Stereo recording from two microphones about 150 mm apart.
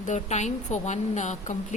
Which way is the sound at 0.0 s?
50° left (ahead or behind).